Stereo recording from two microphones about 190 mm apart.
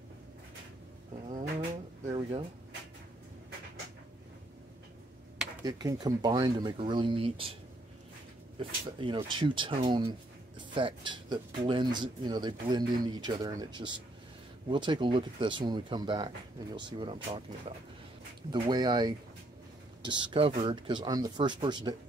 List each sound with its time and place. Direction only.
5.6 s speech: 20° right (ahead or behind)
8.5 s speech: 25° right (ahead or behind)